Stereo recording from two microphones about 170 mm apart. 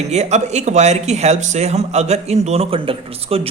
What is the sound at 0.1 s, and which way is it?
Speech, 40° right (ahead or behind).